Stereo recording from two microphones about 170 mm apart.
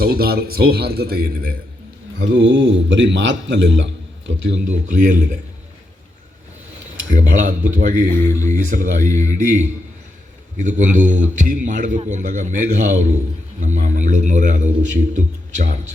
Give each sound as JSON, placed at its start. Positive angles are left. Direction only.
{"t": 0.0, "sound": "a man's voice", "side_deg": -65}
{"t": 2.1, "sound": "a man's voice", "side_deg": -90}
{"t": 4.6, "sound": "a man's voice", "side_deg": -45}
{"t": 7.1, "sound": "a man's voice", "side_deg": -50}
{"t": 8.1, "sound": "speech", "side_deg": 15}
{"t": 8.5, "sound": "a man's voice", "side_deg": -50}
{"t": 10.6, "sound": "a man's voice", "side_deg": -45}